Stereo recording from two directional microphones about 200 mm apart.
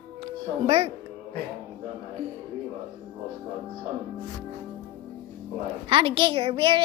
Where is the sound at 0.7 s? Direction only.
30° right (ahead or behind).